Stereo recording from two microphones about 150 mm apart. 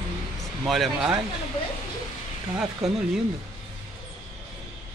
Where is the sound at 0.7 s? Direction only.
Centre (ahead or behind).